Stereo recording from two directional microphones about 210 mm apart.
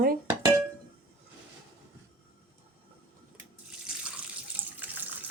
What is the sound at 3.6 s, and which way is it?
Water tap, 5° right (ahead or behind).